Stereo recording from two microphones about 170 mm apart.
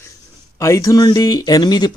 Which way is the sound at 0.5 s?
15° left (ahead or behind).